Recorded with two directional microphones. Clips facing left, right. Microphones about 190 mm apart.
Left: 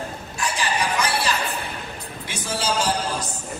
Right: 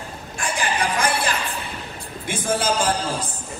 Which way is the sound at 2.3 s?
50° right (ahead or behind).